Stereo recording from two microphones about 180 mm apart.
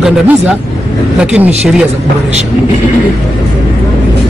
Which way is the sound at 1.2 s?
5° right (ahead or behind).